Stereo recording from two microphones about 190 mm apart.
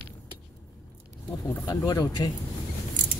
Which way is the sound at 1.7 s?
20° left (ahead or behind).